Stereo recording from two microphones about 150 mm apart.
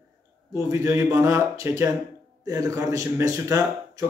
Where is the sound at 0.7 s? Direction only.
20° right (ahead or behind).